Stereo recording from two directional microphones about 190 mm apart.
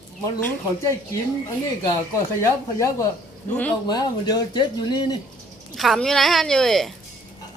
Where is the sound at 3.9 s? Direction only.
20° left (ahead or behind).